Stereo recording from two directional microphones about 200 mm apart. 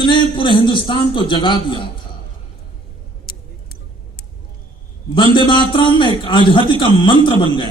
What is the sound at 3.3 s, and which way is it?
Tick, 50° left (ahead or behind).